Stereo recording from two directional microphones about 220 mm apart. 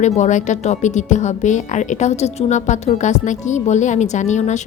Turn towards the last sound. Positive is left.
turn(degrees=30)  # may be behind; listen again after turning